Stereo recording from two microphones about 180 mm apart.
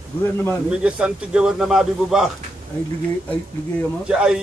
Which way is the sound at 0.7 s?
5° right (ahead or behind).